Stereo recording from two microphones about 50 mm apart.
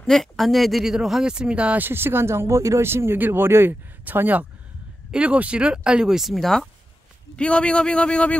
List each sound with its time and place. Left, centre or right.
0.0 s speech: centre; by 1.8 s right
1.8 s speech: right
2.8 s speech: right
4.0 s speech: right
5.1 s speech: right
6.3 s speech: centre
7.3 s speech: left